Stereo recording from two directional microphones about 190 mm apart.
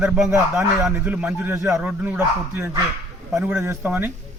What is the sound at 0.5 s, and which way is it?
A man's voice, 5° right (ahead or behind).